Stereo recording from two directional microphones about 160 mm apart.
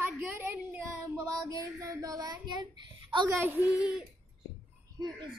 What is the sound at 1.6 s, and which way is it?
A child's voice, 20° right (ahead or behind).